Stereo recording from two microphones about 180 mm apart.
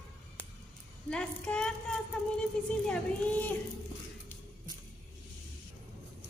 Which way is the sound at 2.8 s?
5° left (ahead or behind).